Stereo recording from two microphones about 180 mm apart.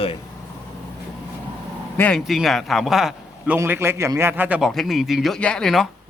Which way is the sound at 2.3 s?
Centre (ahead or behind).